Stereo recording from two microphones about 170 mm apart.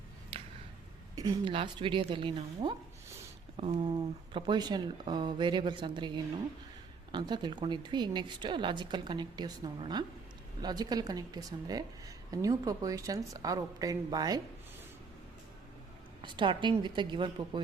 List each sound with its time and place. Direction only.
1.1 s speech: 20° right (ahead or behind)
7.1 s speech: 25° right (ahead or behind)
16.2 s speech: 30° right (ahead or behind)